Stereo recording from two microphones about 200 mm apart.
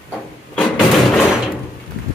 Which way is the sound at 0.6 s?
5° left (ahead or behind).